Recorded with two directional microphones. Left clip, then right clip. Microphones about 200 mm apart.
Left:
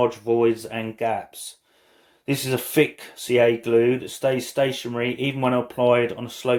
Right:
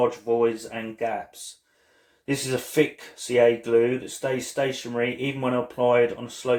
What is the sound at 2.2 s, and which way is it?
Speech, 45° left (ahead or behind).